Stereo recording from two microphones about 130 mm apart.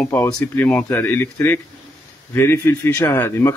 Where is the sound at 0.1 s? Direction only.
20° left (ahead or behind).